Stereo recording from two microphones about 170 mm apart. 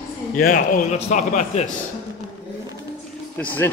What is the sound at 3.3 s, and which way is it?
Speech, 10° left (ahead or behind).